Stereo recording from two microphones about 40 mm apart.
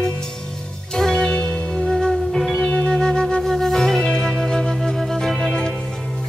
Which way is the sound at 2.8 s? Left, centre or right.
Centre.